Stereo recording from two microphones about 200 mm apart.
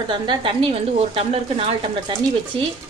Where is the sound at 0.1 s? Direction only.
25° right (ahead or behind).